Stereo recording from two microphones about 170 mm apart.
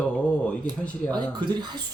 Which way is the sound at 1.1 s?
25° right (ahead or behind).